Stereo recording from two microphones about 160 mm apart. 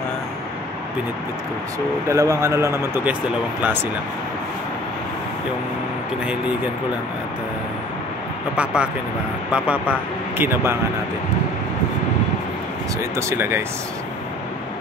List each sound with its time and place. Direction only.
2.0 s speech: 20° right (ahead or behind)
8.5 s speech: 5° right (ahead or behind)
13.1 s speech: 15° right (ahead or behind)